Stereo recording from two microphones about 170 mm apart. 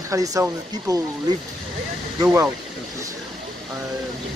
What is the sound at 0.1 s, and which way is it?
Speech, 20° right (ahead or behind).